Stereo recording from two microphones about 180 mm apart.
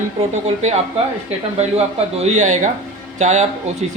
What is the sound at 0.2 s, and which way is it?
Speech, 35° right (ahead or behind).